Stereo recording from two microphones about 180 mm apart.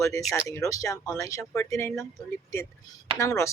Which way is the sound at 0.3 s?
15° left (ahead or behind).